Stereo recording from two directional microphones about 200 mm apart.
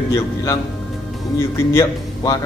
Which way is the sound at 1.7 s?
15° left (ahead or behind).